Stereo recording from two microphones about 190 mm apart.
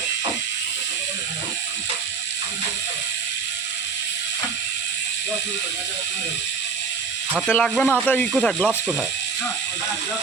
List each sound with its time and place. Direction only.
7.5 s speech: 5° left (ahead or behind)